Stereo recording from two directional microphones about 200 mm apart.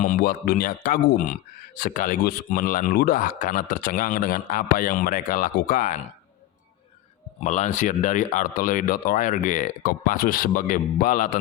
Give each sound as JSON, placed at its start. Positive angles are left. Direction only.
{"t": 0.0, "sound": "speech", "side_deg": 45}
{"t": 7.3, "sound": "speech", "side_deg": 35}